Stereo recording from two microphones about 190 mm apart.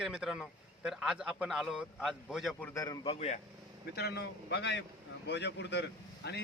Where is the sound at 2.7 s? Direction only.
20° left (ahead or behind).